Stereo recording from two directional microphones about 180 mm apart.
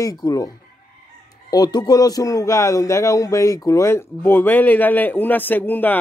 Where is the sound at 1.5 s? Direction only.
20° left (ahead or behind).